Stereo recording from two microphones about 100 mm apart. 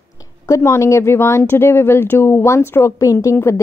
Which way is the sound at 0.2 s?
30° left (ahead or behind).